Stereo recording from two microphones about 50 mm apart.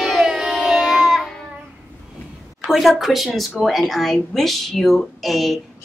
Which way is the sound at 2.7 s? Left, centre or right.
Centre.